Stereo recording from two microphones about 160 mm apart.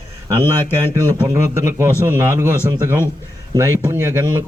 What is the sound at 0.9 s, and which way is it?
A man's voice, 20° right (ahead or behind).